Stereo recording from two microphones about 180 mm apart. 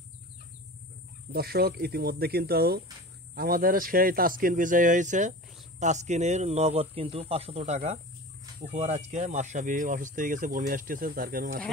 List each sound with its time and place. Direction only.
1.3 s speech: 60° right (ahead or behind)